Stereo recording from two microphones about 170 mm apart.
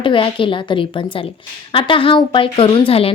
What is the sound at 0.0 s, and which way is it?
A woman's voice, 30° left (ahead or behind).